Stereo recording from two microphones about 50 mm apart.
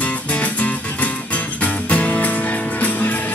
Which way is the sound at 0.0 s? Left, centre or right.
Left.